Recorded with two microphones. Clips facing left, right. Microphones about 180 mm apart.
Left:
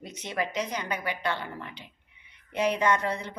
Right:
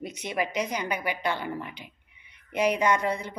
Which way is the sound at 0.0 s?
10° right (ahead or behind).